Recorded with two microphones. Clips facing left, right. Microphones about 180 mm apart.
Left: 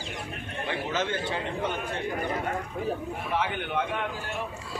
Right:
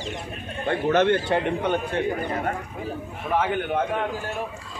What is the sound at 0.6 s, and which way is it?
Speech, 65° right (ahead or behind).